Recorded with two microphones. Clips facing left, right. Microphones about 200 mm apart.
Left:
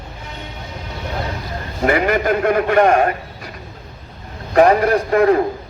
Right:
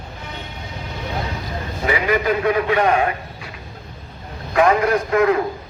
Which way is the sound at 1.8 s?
50° left (ahead or behind).